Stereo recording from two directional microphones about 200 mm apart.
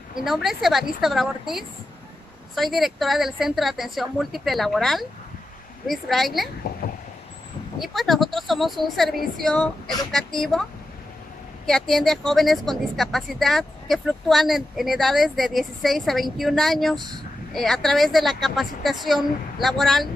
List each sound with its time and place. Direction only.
0.1 s speech: centre (ahead or behind)
6.8 s vehicle: 45° left (ahead or behind)
7.8 s speech: centre (ahead or behind)
11.6 s speech: centre (ahead or behind)